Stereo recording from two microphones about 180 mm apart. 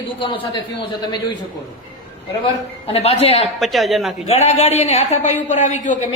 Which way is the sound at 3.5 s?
Centre (ahead or behind).